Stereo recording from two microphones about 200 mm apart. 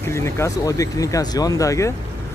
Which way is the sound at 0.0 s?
15° left (ahead or behind).